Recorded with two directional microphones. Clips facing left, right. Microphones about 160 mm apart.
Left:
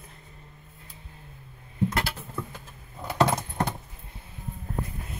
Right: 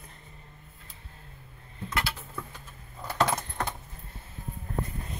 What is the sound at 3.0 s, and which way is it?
Keys jangling, 10° left (ahead or behind).